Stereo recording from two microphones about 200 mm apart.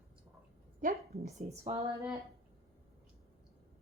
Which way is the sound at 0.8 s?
40° right (ahead or behind).